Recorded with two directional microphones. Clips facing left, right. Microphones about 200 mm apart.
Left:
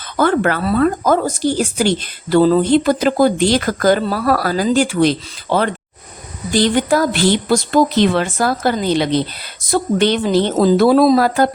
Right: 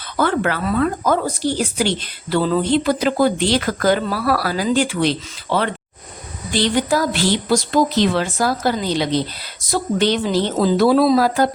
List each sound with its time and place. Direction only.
0.2 s speech: 45° left (ahead or behind)